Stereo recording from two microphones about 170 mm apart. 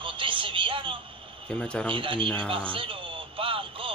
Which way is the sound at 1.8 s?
30° right (ahead or behind).